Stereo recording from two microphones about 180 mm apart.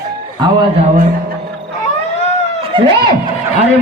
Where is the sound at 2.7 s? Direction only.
30° right (ahead or behind).